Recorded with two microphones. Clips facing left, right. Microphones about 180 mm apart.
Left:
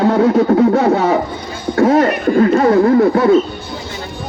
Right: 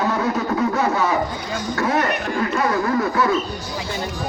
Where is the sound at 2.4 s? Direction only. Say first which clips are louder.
Left 12 dB; 50° left (ahead or behind).